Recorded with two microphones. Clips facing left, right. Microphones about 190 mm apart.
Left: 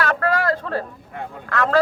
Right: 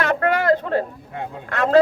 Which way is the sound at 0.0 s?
25° right (ahead or behind).